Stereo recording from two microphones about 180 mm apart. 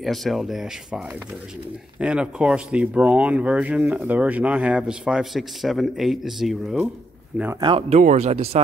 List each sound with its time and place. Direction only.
0.0 s speech: centre (ahead or behind)
7.6 s speech: 30° right (ahead or behind)
8.0 s speech: 40° right (ahead or behind)